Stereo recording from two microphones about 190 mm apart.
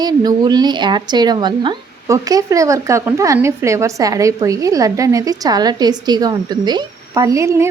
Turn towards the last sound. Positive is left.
turn(degrees=-15)  # may be behind; listen again after turning